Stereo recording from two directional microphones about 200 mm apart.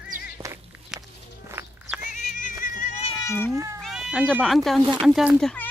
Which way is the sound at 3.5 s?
15° right (ahead or behind).